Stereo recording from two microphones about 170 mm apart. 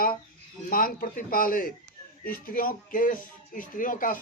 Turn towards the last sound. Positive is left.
turn(degrees=55)  # may be behind; listen again after turning